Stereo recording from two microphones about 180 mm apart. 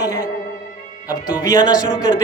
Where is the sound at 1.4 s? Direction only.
20° left (ahead or behind).